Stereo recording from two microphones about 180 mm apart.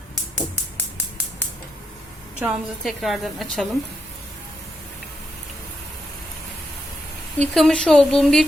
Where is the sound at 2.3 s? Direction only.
5° right (ahead or behind).